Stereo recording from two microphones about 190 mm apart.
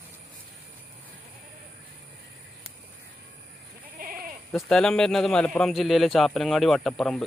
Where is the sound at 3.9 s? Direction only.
50° right (ahead or behind).